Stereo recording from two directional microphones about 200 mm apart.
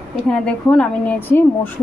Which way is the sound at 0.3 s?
5° left (ahead or behind).